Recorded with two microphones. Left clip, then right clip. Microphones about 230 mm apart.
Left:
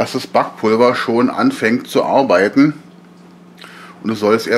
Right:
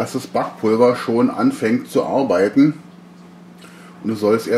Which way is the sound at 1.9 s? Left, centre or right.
Centre.